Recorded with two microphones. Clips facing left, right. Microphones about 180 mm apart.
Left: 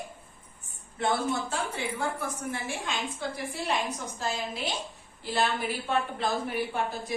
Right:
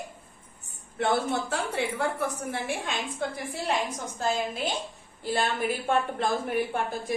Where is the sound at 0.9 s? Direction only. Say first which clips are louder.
Right 2 dB; 65° right (ahead or behind).